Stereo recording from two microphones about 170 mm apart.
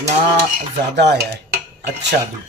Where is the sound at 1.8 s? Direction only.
85° right.